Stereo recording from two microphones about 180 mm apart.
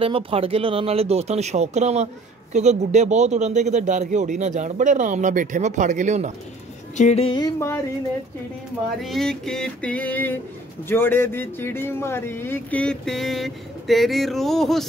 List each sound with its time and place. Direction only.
0.0 s a man's voice: 30° right (ahead or behind)
7.0 s a sound: 35° left (ahead or behind); by 7.8 s 20° left (ahead or behind)
9.0 s speech: centre (ahead or behind)